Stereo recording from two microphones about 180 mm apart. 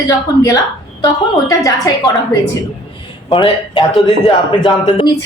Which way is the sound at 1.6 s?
20° left (ahead or behind).